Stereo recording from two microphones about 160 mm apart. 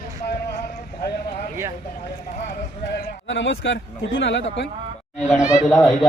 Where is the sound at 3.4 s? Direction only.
90° left.